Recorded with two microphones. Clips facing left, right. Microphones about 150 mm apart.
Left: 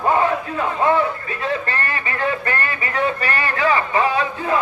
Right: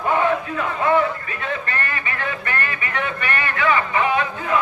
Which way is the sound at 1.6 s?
30° left (ahead or behind).